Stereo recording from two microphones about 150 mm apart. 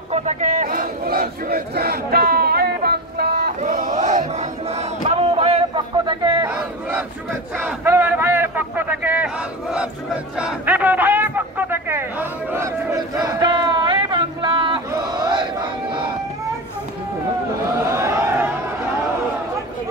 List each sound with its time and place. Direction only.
0.1 s battle cry: 50° right (ahead or behind); by 3.5 s 90° right
3.6 s chant: 60° right (ahead or behind); by 5.6 s 40° right (ahead or behind)
6.4 s battle cry: 10° right (ahead or behind)
7.8 s a sound: 15° right (ahead or behind); by 14.8 s 35° right (ahead or behind)
14.9 s battle cry: 25° right (ahead or behind)
17.9 s a sound: 15° right (ahead or behind)